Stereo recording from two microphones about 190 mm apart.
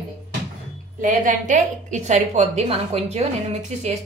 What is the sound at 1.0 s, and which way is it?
A woman's voice, 40° right (ahead or behind).